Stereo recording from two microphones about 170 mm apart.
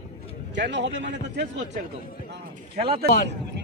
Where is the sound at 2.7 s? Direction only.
35° right (ahead or behind).